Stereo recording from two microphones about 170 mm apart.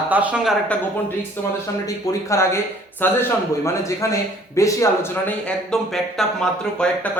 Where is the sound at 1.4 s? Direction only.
10° left (ahead or behind).